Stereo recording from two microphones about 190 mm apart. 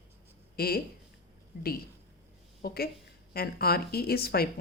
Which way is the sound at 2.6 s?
55° left (ahead or behind).